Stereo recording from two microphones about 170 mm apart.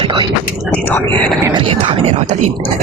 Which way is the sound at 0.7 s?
10° left (ahead or behind).